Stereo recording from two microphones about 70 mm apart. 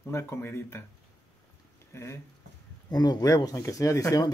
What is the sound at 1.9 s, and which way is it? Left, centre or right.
Speech, left.